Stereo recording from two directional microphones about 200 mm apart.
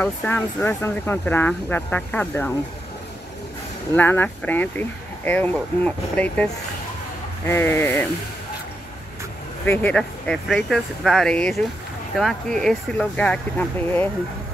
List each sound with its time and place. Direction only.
0.0 s speech: 10° left (ahead or behind)
3.9 s speech: 10° left (ahead or behind)
9.7 s speech: 10° left (ahead or behind)